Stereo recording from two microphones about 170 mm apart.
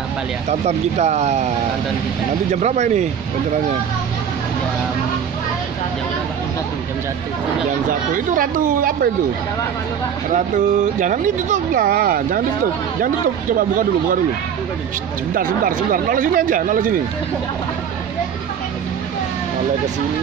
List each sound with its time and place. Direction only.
0.5 s speech: 40° right (ahead or behind)
2.5 s speech: 45° right (ahead or behind)
8.1 s speech: 50° right (ahead or behind)
10.3 s speech: 50° right (ahead or behind)
15.3 s speech: 55° right (ahead or behind)